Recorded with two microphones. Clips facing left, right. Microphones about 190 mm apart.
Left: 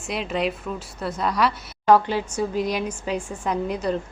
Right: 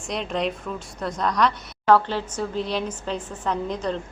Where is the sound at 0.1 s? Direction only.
5° left (ahead or behind).